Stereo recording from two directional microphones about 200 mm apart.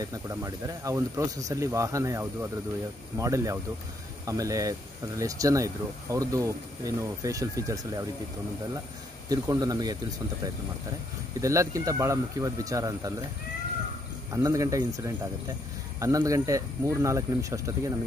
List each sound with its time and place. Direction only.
0.0 s speech: 15° right (ahead or behind)
9.3 s speech: 20° right (ahead or behind)
11.4 s speech: 15° right (ahead or behind)
14.3 s speech: 15° right (ahead or behind)
16.0 s speech: 15° right (ahead or behind)